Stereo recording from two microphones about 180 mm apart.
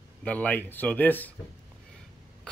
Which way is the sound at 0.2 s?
10° left (ahead or behind).